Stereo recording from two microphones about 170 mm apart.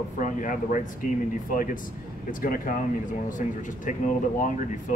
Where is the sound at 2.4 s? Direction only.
55° left (ahead or behind).